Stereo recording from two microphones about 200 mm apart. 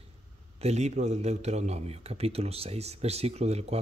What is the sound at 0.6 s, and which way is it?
A man's voice, 35° right (ahead or behind).